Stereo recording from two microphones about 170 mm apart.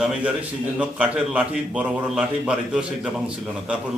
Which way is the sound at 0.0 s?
5° right (ahead or behind).